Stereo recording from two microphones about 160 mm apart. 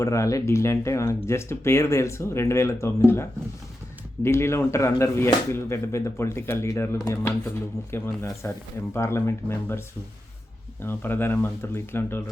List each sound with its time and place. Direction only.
0.0 s speech: 20° left (ahead or behind)
10.8 s speech: 15° left (ahead or behind)